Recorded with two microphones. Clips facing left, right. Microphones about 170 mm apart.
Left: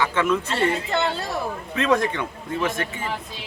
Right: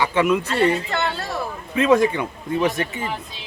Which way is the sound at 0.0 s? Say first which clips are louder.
Right 3 dB; 15° right (ahead or behind).